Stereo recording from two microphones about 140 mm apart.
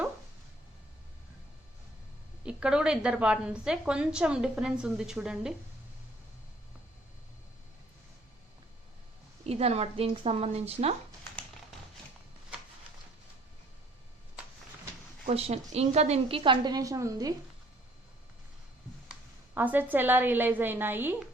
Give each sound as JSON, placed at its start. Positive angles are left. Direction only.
{"t": 2.4, "sound": "a woman's voice", "side_deg": -10}
{"t": 9.5, "sound": "a woman's voice", "side_deg": -45}
{"t": 15.3, "sound": "a woman's voice", "side_deg": -50}
{"t": 19.5, "sound": "a woman's voice", "side_deg": -15}